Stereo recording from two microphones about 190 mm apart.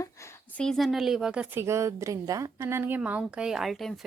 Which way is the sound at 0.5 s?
5° left (ahead or behind).